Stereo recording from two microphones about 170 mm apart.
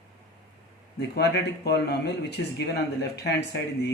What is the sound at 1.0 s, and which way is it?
Speech, 75° left (ahead or behind).